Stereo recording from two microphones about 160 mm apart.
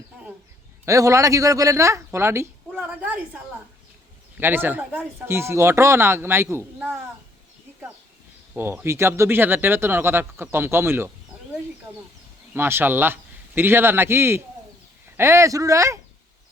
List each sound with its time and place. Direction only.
0.9 s speech: 20° right (ahead or behind)
8.5 s speech: 15° right (ahead or behind)
12.5 s speech: 15° right (ahead or behind)